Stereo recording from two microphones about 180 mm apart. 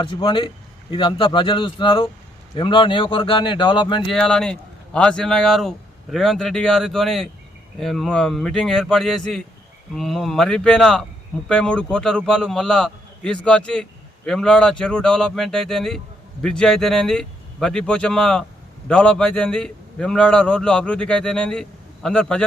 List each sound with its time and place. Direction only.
0.0 s a man's voice: 25° left (ahead or behind)
4.0 s a man's voice: centre (ahead or behind)